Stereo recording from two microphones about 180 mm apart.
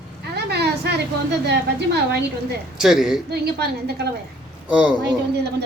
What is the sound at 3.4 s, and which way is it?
Speech, 65° right (ahead or behind).